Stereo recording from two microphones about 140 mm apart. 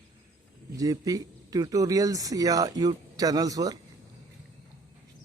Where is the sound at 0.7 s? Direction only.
25° right (ahead or behind).